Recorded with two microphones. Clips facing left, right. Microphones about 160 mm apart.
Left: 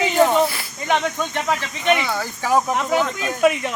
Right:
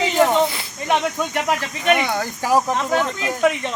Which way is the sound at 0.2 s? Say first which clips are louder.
Left 1 dB; 15° right (ahead or behind).